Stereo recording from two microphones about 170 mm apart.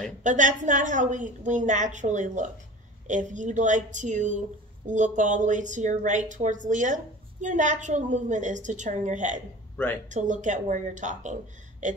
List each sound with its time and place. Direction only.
0.2 s a woman's voice: 50° right (ahead or behind)
11.8 s gasp: 45° right (ahead or behind)